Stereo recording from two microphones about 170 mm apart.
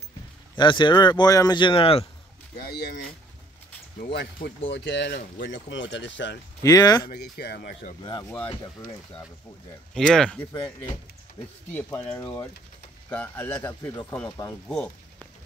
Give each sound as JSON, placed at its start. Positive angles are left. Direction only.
{"t": 0.6, "sound": "speech", "side_deg": 25}
{"t": 4.0, "sound": "speech", "side_deg": 70}
{"t": 6.6, "sound": "speech", "side_deg": 20}
{"t": 7.1, "sound": "speech", "side_deg": 70}
{"t": 8.0, "sound": "speech", "side_deg": 25}
{"t": 9.9, "sound": "speech", "side_deg": 5}
{"t": 11.7, "sound": "speech", "side_deg": 10}